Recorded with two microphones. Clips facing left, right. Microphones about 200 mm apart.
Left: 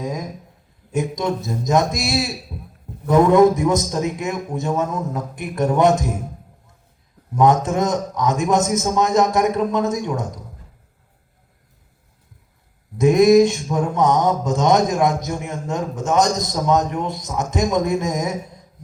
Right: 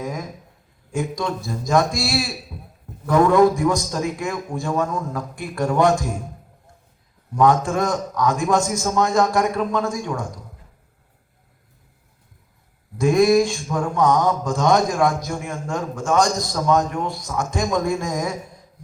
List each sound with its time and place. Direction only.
0.0 s a sound: 20° left (ahead or behind)
0.9 s speech: 20° left (ahead or behind)
7.3 s speech: 20° left (ahead or behind)
13.0 s speech: 20° left (ahead or behind)